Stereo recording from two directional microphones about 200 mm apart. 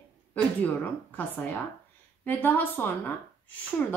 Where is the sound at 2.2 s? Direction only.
10° left (ahead or behind).